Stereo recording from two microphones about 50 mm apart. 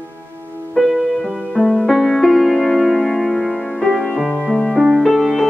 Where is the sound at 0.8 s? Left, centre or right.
Centre.